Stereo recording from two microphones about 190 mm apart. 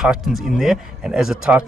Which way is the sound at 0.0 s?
Centre (ahead or behind).